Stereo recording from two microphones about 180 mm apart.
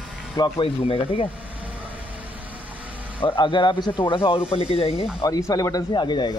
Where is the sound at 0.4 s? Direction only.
30° left (ahead or behind).